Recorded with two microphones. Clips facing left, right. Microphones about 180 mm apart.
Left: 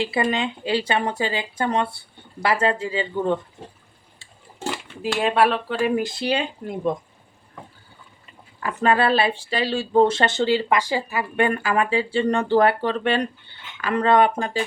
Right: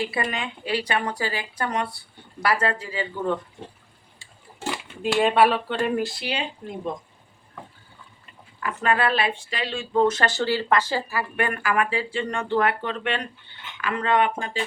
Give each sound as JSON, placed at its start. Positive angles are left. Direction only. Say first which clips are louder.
{"t": 0.0, "sound": "speech", "louder": "left 5 dB", "side_deg": 25}
{"t": 5.2, "sound": "speech", "louder": "even", "side_deg": 0}
{"t": 6.0, "sound": "speech", "louder": "left 1 dB", "side_deg": 20}
{"t": 8.6, "sound": "speech", "louder": "left 4 dB", "side_deg": 30}